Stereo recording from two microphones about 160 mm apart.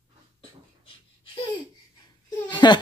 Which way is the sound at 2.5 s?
30° left (ahead or behind).